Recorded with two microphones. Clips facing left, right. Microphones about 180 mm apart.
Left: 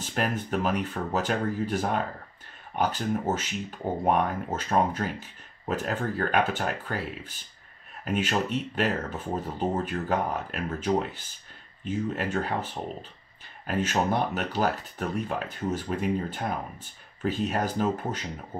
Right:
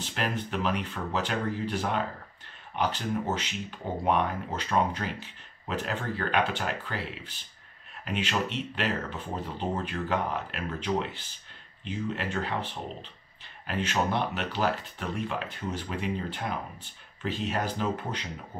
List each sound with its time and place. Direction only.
0.0 s speech: 45° left (ahead or behind)